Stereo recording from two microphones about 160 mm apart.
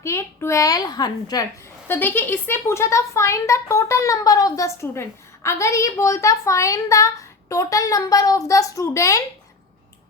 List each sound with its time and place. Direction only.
0.0 s speech: 15° left (ahead or behind)
1.9 s speech: 10° left (ahead or behind)